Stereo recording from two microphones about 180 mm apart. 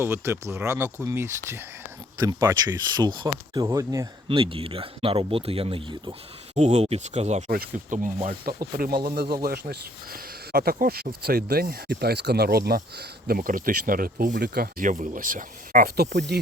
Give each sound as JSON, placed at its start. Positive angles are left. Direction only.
{"t": 0.0, "sound": "speech", "side_deg": -15}
{"t": 4.3, "sound": "speech", "side_deg": -30}
{"t": 6.5, "sound": "speech", "side_deg": -40}
{"t": 7.5, "sound": "speech", "side_deg": -55}
{"t": 7.9, "sound": "speech", "side_deg": -40}